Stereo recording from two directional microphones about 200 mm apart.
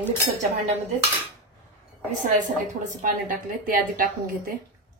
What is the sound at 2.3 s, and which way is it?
A woman's voice, 40° right (ahead or behind).